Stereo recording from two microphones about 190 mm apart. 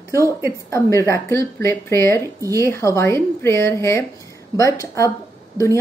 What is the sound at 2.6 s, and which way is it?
A woman's voice, 15° left (ahead or behind).